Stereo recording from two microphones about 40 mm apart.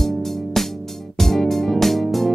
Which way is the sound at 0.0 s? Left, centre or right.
Centre.